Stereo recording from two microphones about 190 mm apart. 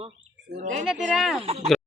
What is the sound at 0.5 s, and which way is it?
Speech, 40° right (ahead or behind).